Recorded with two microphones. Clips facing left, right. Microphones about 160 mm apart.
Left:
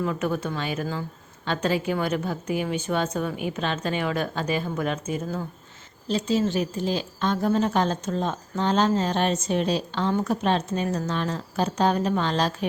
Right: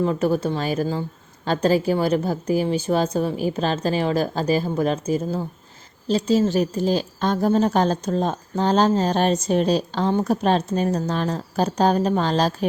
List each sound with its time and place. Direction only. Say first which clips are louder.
0.0 s a woman's voice: right 6 dB; 35° right (ahead or behind)